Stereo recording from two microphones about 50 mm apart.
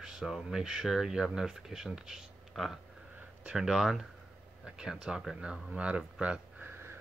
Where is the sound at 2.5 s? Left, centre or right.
Centre.